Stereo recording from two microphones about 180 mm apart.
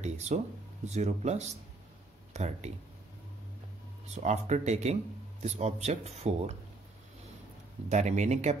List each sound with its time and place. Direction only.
0.0 s speech: 40° right (ahead or behind)
4.1 s speech: 40° right (ahead or behind)
7.9 s speech: 40° right (ahead or behind)